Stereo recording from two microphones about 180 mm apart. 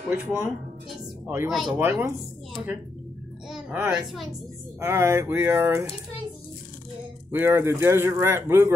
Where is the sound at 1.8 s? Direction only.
10° right (ahead or behind).